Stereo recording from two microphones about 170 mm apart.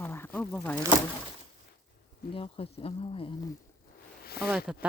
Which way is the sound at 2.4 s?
35° left (ahead or behind).